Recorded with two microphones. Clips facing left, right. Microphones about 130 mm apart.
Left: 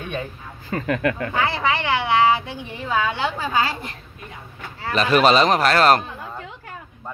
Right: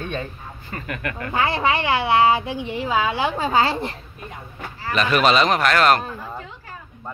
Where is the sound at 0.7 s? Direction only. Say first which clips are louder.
Left 8 dB; 90° left.